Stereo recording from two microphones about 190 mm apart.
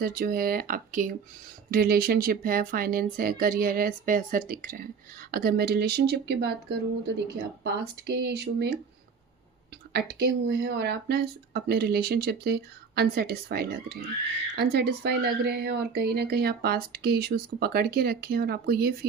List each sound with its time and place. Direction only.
0.0 s a woman's voice: 50° right (ahead or behind)
9.9 s a woman's voice: 60° right (ahead or behind)